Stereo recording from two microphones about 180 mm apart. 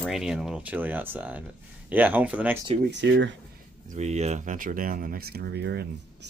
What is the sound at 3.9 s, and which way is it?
Speech, 40° right (ahead or behind).